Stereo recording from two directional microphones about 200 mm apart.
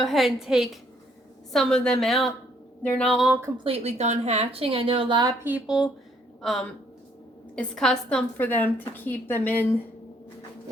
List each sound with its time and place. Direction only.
0.0 s a woman's voice: centre (ahead or behind)
3.6 s a woman's voice: 30° right (ahead or behind)
5.4 s a woman's voice: 10° right (ahead or behind); by 9.6 s 10° left (ahead or behind)